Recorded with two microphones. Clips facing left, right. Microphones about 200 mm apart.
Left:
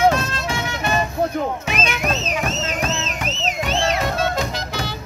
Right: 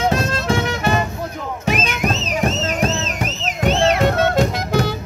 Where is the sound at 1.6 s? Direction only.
40° right (ahead or behind).